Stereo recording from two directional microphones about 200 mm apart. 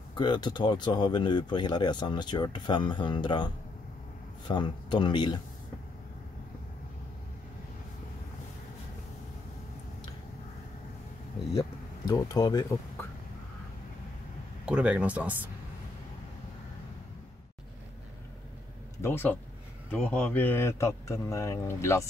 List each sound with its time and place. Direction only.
0.1 s speech: 20° left (ahead or behind)
4.5 s speech: 20° left (ahead or behind)
11.5 s speech: 15° left (ahead or behind)
14.7 s speech: 5° right (ahead or behind)
18.9 s a man's voice: 10° left (ahead or behind)